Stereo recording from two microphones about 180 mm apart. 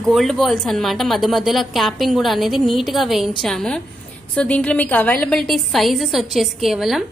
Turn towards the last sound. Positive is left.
turn(degrees=0)  # may be behind; listen again after turning